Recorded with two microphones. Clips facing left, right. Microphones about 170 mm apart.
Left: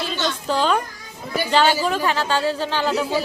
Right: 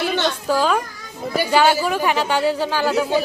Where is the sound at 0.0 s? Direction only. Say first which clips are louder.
Right 5 dB; 65° right (ahead or behind).